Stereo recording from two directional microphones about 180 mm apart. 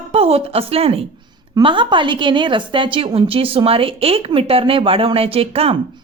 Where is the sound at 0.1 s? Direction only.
35° right (ahead or behind).